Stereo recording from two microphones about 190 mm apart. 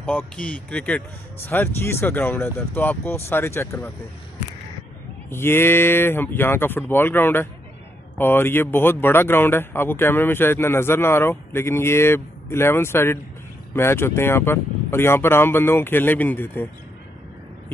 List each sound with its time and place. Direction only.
0.0 s speech: 10° left (ahead or behind)
5.3 s speech: 10° left (ahead or behind)